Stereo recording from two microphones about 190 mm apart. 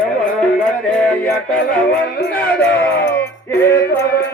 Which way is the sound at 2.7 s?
10° left (ahead or behind).